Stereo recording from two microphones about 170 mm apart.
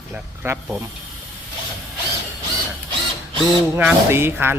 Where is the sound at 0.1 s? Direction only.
10° right (ahead or behind).